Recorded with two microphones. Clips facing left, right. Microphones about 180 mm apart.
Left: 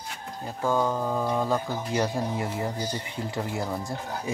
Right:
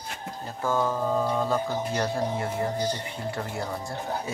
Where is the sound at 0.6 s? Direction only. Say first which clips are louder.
Left 1 dB; 15° left (ahead or behind).